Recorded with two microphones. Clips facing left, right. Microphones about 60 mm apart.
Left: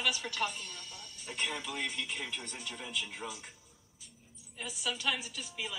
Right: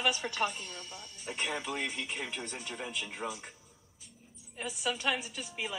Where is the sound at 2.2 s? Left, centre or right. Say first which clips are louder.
Right 2 dB; centre.